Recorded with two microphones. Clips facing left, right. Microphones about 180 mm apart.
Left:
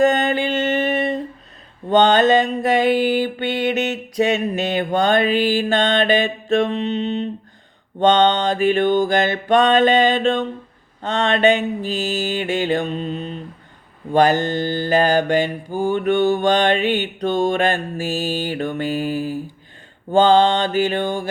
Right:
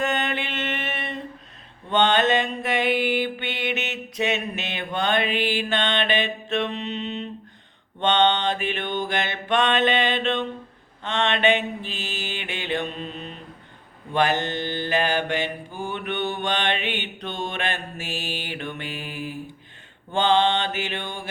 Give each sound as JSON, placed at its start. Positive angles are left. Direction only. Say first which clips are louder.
{"t": 0.0, "sound": "mantra", "louder": "left 9 dB", "side_deg": 40}